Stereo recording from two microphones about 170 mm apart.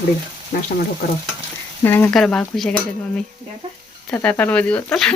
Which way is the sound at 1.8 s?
15° left (ahead or behind).